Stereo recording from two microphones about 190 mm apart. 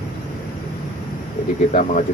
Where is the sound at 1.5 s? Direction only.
40° left (ahead or behind).